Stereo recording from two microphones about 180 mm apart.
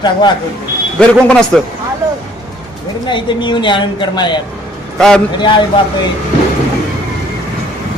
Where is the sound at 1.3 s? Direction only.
5° left (ahead or behind).